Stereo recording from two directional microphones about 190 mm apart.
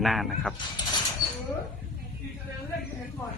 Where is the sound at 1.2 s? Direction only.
20° left (ahead or behind).